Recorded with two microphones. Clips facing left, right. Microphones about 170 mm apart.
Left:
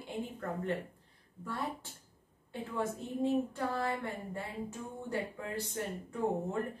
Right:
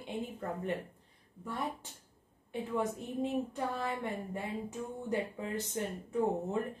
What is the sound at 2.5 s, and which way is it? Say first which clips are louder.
A woman's voice: right 2 dB; 20° right (ahead or behind).